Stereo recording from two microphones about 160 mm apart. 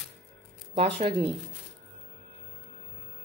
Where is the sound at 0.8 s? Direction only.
35° right (ahead or behind).